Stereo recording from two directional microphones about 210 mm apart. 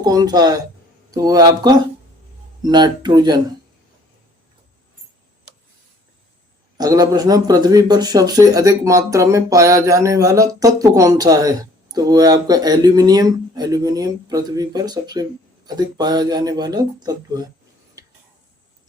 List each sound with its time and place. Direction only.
0.0 s speech: 20° right (ahead or behind)
6.7 s speech: 15° right (ahead or behind)
18.0 s tick-tock: 15° right (ahead or behind)